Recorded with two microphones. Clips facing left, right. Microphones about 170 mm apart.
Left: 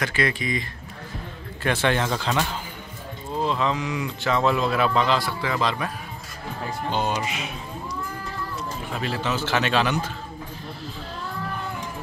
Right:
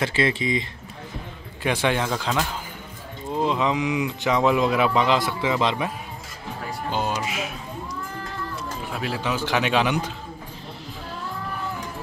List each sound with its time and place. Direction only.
0.0 s speech: 25° right (ahead or behind)
1.6 s speech: 10° right (ahead or behind)
3.3 s speech: 15° right (ahead or behind)
6.9 s speech: centre (ahead or behind)
8.9 s speech: 10° right (ahead or behind)